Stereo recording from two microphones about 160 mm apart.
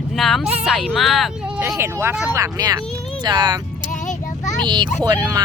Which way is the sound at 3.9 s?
50° left (ahead or behind).